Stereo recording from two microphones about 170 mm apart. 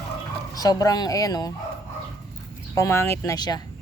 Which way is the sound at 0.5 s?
20° left (ahead or behind).